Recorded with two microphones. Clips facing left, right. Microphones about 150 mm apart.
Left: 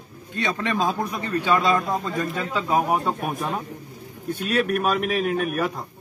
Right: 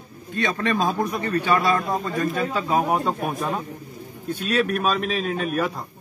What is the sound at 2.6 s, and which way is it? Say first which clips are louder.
A man's voice: left 1 dB; 10° left (ahead or behind).